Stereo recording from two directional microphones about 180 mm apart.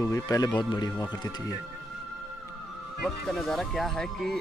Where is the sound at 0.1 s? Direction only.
20° left (ahead or behind).